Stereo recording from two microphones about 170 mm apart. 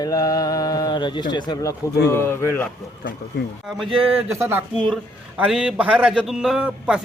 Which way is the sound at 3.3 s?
80° left.